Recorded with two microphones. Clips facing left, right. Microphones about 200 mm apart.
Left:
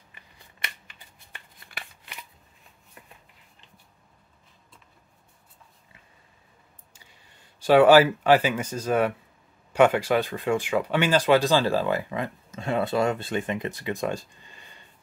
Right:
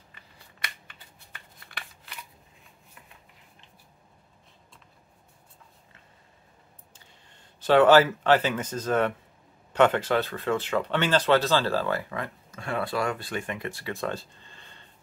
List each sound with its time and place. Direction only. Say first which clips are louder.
0.1 s scissors: left 1 dB; 15° left (ahead or behind)
6.9 s speech: right 1 dB; 10° left (ahead or behind)